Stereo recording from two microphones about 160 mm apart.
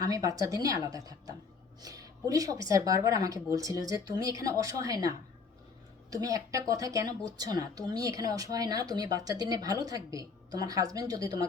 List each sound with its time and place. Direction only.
0.0 s speech: 20° right (ahead or behind)